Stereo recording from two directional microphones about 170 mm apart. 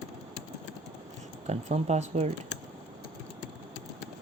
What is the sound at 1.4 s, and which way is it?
Speech, 40° right (ahead or behind).